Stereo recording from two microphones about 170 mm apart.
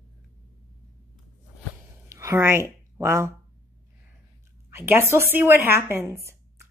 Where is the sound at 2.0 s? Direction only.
15° right (ahead or behind).